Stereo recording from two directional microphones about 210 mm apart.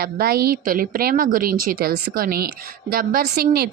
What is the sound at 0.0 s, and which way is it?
A woman's voice, 45° right (ahead or behind).